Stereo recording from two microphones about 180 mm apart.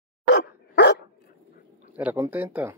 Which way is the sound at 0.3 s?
70° left (ahead or behind).